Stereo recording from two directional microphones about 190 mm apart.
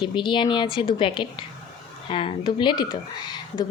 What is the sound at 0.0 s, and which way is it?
A woman's voice, 25° left (ahead or behind).